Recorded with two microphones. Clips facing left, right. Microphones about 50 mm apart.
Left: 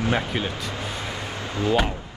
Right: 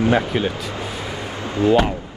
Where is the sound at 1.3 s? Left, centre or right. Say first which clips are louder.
Right 8 dB; right.